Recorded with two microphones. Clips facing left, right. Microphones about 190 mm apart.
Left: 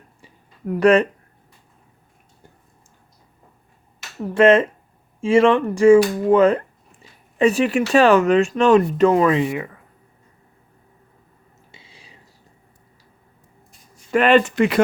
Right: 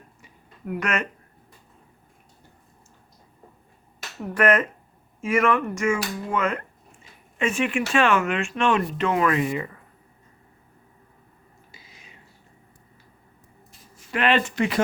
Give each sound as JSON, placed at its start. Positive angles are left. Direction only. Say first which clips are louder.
{"t": 0.2, "sound": "a sound", "louder": "left 6 dB", "side_deg": 35}
{"t": 4.4, "sound": "speech", "louder": "left 7 dB", "side_deg": 25}
{"t": 11.7, "sound": "whispering", "louder": "left 3 dB", "side_deg": 30}
{"t": 14.2, "sound": "speech", "louder": "left 7 dB", "side_deg": 50}